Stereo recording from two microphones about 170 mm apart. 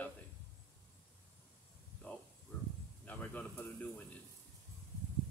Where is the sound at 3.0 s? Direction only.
10° left (ahead or behind).